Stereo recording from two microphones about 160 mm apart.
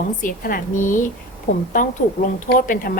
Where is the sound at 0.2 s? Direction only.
60° left (ahead or behind).